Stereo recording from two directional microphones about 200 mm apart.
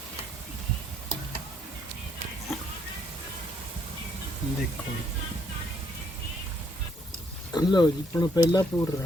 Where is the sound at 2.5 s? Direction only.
Centre (ahead or behind).